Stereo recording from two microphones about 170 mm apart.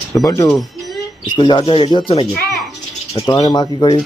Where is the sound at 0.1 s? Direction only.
20° left (ahead or behind); by 3.4 s 35° left (ahead or behind).